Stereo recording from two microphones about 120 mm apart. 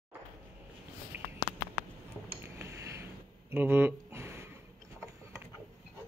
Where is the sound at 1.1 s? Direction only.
15° right (ahead or behind).